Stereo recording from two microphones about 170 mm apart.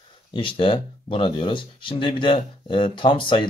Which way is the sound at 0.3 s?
30° left (ahead or behind).